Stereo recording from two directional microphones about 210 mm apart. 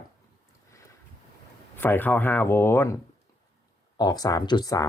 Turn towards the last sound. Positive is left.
turn(degrees=15)  # may be behind; listen again after turning